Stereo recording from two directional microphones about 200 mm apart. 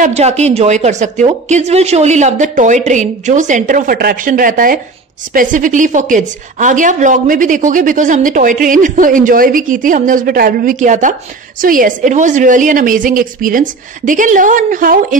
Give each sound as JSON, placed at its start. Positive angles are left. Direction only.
{"t": 0.0, "sound": "a woman's voice", "side_deg": -35}